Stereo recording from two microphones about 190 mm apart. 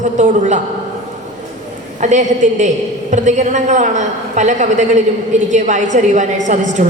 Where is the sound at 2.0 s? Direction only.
40° right (ahead or behind).